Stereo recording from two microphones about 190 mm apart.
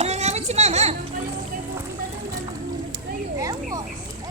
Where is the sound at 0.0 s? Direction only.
35° right (ahead or behind).